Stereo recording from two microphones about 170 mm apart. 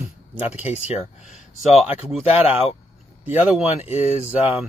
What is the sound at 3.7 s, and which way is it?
Speech, 40° left (ahead or behind).